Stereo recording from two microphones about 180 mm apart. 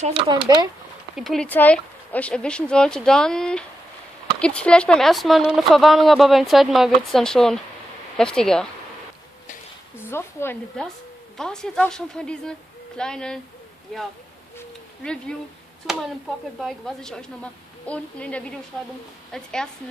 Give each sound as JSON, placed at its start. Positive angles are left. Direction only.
{"t": 0.0, "sound": "speech", "side_deg": -30}
{"t": 1.1, "sound": "speech", "side_deg": 0}
{"t": 9.9, "sound": "speech", "side_deg": 15}
{"t": 14.6, "sound": "a sound", "side_deg": 5}
{"t": 16.6, "sound": "speech", "side_deg": 0}